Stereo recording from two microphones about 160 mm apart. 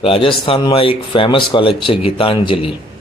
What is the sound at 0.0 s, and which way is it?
Speech, 35° left (ahead or behind).